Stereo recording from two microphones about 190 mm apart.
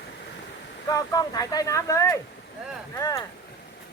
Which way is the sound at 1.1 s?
20° left (ahead or behind).